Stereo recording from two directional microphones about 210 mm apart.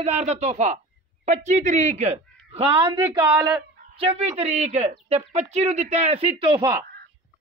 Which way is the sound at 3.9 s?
30° right (ahead or behind).